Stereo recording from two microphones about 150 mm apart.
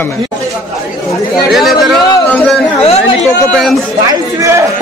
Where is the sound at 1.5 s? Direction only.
Centre (ahead or behind).